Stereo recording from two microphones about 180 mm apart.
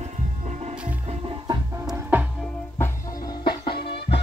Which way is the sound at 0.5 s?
35° right (ahead or behind).